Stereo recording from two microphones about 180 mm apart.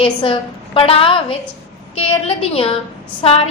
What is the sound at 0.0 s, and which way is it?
A woman's voice, 30° left (ahead or behind).